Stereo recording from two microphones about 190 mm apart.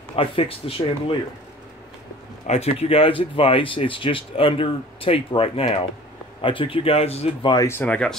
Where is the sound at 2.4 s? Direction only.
35° left (ahead or behind).